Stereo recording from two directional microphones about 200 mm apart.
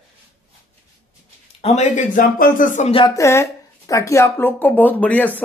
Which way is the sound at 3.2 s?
15° left (ahead or behind).